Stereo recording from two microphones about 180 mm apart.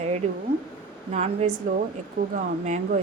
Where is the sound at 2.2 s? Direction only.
50° right (ahead or behind).